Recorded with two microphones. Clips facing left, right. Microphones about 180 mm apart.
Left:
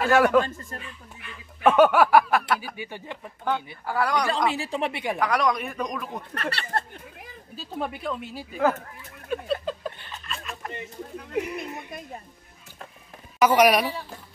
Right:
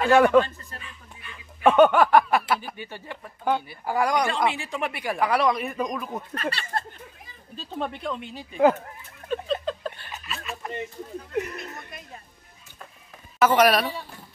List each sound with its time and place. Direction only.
0.0 s speech: 5° left (ahead or behind)
0.5 s speech: 45° left (ahead or behind)
1.6 s speech: centre (ahead or behind)
2.4 s speech: 5° right (ahead or behind)
2.7 s speech: 15° left (ahead or behind)
3.5 s speech: 10° right (ahead or behind)
4.6 s speech: 30° left (ahead or behind)
5.2 s speech: 5° right (ahead or behind)
6.3 s speech: 65° left (ahead or behind)
7.5 s speech: 10° left (ahead or behind)
9.3 s a sound: 10° left (ahead or behind)
10.0 s a sound: 5° right (ahead or behind)
11.3 s speech: 10° left (ahead or behind)
13.4 s speech: 10° left (ahead or behind)